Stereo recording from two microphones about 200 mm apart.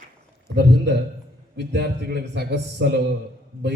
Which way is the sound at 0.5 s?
60° right (ahead or behind).